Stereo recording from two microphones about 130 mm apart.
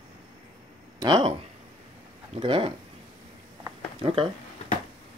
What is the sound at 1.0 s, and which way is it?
Speech, 35° right (ahead or behind).